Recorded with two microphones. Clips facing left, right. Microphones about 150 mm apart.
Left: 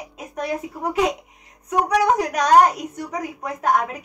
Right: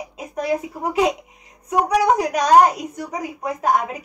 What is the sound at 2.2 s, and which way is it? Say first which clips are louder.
A woman's voice: right 1 dB; centre (ahead or behind).